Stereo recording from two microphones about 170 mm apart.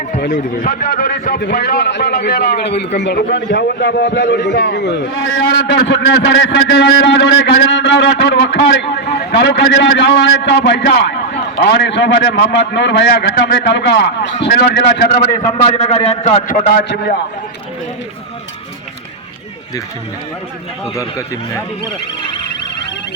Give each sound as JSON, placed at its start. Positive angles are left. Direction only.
{"t": 0.3, "sound": "a man's voice", "side_deg": 50}
{"t": 14.4, "sound": "a man's voice", "side_deg": 70}
{"t": 15.4, "sound": "a man's voice", "side_deg": 40}
{"t": 20.9, "sound": "speech", "side_deg": 15}